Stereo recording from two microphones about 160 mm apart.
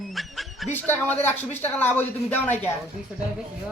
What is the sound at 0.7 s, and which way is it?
Speech, 10° left (ahead or behind).